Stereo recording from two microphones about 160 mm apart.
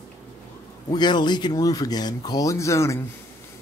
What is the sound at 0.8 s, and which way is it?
Speech, 25° left (ahead or behind).